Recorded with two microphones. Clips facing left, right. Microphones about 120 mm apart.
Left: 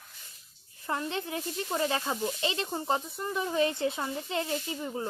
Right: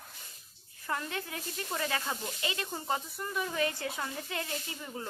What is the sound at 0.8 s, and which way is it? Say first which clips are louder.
Speech: left 4 dB; 25° left (ahead or behind).